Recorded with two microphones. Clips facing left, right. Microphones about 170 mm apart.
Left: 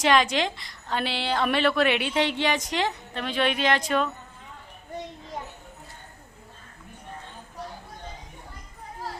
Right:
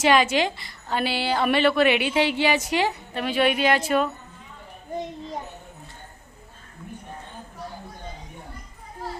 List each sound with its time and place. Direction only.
0.0 s a woman's voice: 5° right (ahead or behind)